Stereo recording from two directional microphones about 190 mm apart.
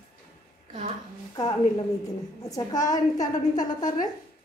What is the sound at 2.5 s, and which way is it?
Speech, 20° left (ahead or behind).